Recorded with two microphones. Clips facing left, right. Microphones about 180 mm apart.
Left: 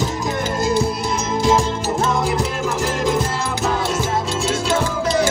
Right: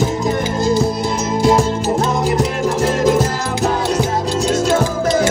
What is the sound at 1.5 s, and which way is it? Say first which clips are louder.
Music: right 2 dB; 35° right (ahead or behind).